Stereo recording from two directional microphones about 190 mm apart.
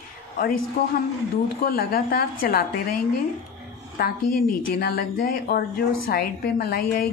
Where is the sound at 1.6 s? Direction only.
50° left (ahead or behind).